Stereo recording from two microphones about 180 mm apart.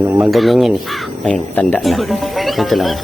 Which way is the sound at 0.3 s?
Centre (ahead or behind).